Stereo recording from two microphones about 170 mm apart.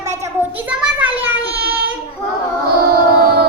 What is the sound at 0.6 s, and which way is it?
Child singing, 5° right (ahead or behind).